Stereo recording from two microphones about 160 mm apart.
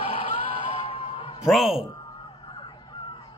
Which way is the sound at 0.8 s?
35° left (ahead or behind).